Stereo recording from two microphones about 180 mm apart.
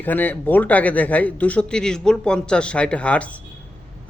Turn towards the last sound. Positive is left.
turn(degrees=5)  # may be behind; listen again after turning